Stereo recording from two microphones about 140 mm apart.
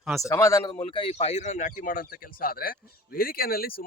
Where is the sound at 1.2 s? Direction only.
50° left (ahead or behind).